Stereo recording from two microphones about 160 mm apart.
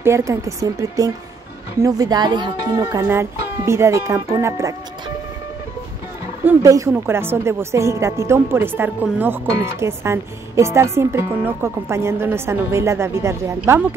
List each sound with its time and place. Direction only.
0.0 s speech: 20° right (ahead or behind)
6.4 s a woman's voice: 20° right (ahead or behind)